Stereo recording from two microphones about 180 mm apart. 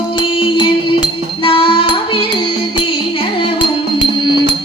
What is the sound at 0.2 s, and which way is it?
Music, 25° left (ahead or behind).